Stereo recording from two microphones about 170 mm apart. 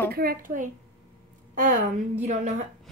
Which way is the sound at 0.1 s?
60° right (ahead or behind).